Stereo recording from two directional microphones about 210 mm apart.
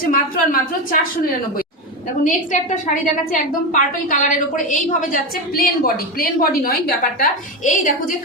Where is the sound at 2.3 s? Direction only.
40° left (ahead or behind).